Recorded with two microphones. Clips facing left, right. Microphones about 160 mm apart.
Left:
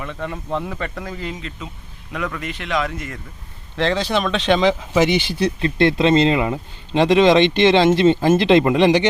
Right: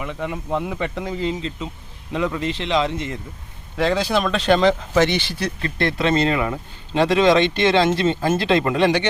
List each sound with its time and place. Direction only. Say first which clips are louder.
0.0 s speech: right 1 dB; 15° right (ahead or behind)
3.8 s speech: even; 5° right (ahead or behind); by 9.0 s 20° left (ahead or behind)